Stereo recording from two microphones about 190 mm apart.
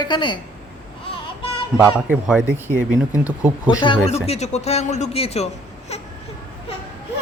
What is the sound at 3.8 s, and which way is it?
Speech, 35° left (ahead or behind).